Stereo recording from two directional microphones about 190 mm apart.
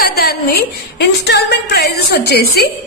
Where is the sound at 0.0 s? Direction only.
55° left (ahead or behind).